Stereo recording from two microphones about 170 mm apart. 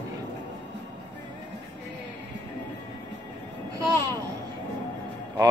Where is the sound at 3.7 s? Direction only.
20° right (ahead or behind).